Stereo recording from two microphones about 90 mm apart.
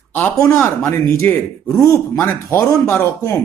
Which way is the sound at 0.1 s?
20° left (ahead or behind).